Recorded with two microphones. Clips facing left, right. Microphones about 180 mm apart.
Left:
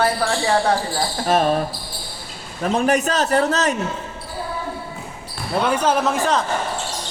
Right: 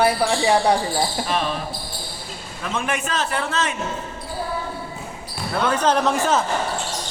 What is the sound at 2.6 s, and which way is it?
A man's voice, 40° left (ahead or behind).